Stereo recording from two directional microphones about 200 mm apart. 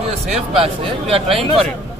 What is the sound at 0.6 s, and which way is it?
Speech, 25° right (ahead or behind).